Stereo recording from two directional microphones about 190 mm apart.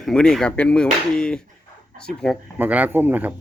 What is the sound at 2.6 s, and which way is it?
Speech, 10° right (ahead or behind).